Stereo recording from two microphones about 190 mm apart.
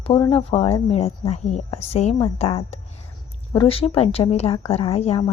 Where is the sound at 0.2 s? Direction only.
30° left (ahead or behind).